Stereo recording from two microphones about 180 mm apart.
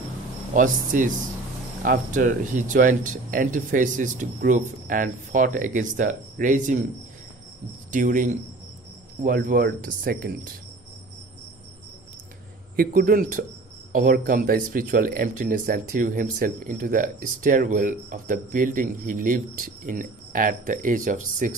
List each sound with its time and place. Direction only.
0.6 s speech: 45° right (ahead or behind)
7.9 s speech: 45° right (ahead or behind)
12.7 s speech: 55° right (ahead or behind)